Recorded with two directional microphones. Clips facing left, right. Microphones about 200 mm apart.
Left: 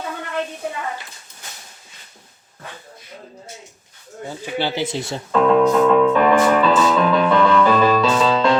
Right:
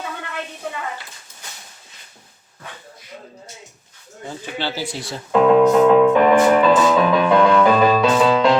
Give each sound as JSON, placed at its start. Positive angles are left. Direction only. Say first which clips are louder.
{"t": 4.5, "sound": "speech", "louder": "left 5 dB", "side_deg": 15}
{"t": 5.3, "sound": "music", "louder": "right 2 dB", "side_deg": -5}